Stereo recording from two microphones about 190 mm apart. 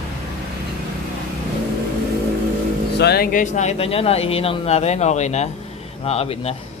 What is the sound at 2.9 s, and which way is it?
Speech, 55° left (ahead or behind).